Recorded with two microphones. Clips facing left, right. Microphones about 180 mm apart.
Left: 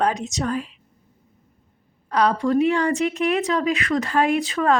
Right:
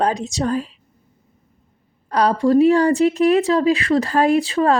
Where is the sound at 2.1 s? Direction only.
35° right (ahead or behind).